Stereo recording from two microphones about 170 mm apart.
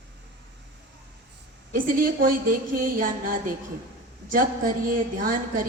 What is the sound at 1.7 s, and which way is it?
A woman's voice, 55° right (ahead or behind).